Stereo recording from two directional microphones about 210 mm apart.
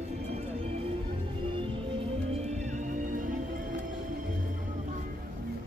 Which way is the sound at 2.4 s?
35° right (ahead or behind).